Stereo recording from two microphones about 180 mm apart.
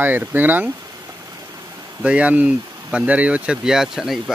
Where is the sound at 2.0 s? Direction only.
5° right (ahead or behind).